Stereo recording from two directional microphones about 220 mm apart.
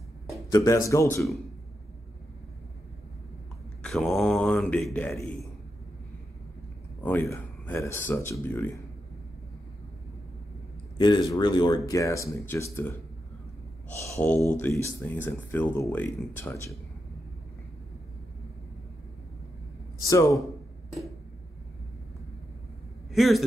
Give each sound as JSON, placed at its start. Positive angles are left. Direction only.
{"t": 0.3, "sound": "speech", "side_deg": 15}
{"t": 3.8, "sound": "speech", "side_deg": 0}
{"t": 7.0, "sound": "speech", "side_deg": 10}
{"t": 11.0, "sound": "speech", "side_deg": 20}
{"t": 14.0, "sound": "speech", "side_deg": 10}
{"t": 20.1, "sound": "speech", "side_deg": 15}
{"t": 23.1, "sound": "a man's voice", "side_deg": 0}